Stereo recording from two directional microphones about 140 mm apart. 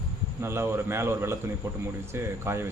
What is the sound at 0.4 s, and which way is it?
A man's voice, 20° right (ahead or behind).